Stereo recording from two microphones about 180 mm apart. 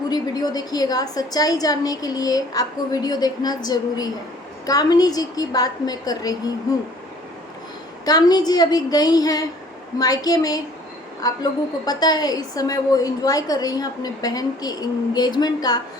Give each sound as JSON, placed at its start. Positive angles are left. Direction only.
{"t": 0.1, "sound": "a woman's voice", "side_deg": 20}
{"t": 8.0, "sound": "a woman's voice", "side_deg": 20}